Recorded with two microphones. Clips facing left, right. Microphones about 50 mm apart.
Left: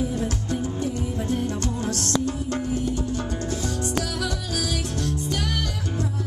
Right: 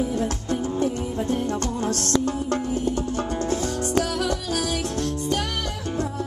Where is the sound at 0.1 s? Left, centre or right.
Right.